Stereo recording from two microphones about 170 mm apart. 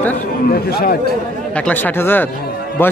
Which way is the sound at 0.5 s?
65° left (ahead or behind).